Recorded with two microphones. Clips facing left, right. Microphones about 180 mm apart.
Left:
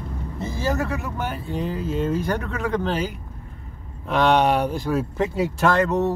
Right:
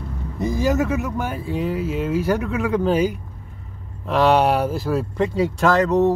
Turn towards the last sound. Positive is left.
turn(degrees=0)  # may be behind; listen again after turning